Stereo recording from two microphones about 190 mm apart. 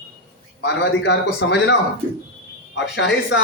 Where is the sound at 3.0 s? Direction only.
70° left (ahead or behind).